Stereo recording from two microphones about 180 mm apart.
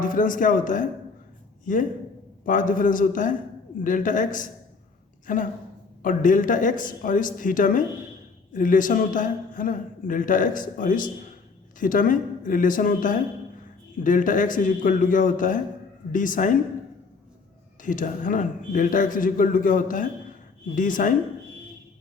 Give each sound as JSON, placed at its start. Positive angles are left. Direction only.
{"t": 0.0, "sound": "a man's voice", "side_deg": 50}
{"t": 17.8, "sound": "a man's voice", "side_deg": 45}